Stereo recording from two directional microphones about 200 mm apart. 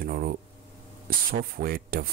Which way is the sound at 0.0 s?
45° right (ahead or behind).